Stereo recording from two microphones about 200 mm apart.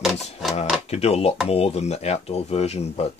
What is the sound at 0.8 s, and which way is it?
Speech, 30° left (ahead or behind).